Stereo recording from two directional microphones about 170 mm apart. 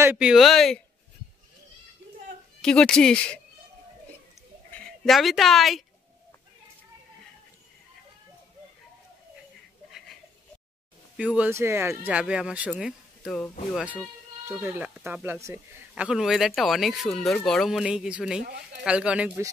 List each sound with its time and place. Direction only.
0.0 s speech: 5° right (ahead or behind)
2.6 s speech: 5° left (ahead or behind)
4.6 s speech: 5° left (ahead or behind)
9.8 s a sound: centre (ahead or behind)
11.1 s speech: 5° right (ahead or behind)
14.6 s speech: 15° right (ahead or behind)
15.9 s speech: 5° right (ahead or behind)
18.4 s speech: 65° right (ahead or behind)
18.9 s speech: 5° right (ahead or behind)